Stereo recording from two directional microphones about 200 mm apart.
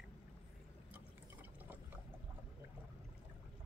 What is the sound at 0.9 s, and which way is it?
Water, 10° right (ahead or behind).